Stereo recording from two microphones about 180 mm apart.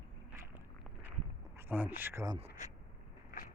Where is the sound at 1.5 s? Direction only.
10° right (ahead or behind).